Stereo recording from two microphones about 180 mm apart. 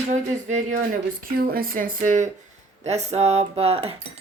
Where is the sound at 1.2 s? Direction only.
55° right (ahead or behind).